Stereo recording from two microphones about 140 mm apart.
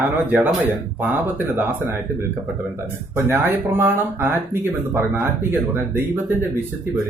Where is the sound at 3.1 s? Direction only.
15° right (ahead or behind).